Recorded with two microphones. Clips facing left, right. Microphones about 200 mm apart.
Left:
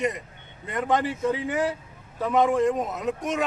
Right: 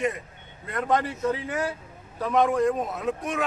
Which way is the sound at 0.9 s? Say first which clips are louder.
Left 1 dB; 20° left (ahead or behind).